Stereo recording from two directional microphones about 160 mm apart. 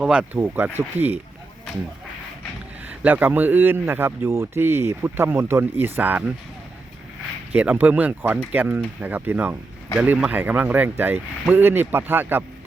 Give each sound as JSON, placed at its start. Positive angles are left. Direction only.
{"t": 0.0, "sound": "speech", "side_deg": -5}
{"t": 3.0, "sound": "speech", "side_deg": -10}
{"t": 7.5, "sound": "speech", "side_deg": -10}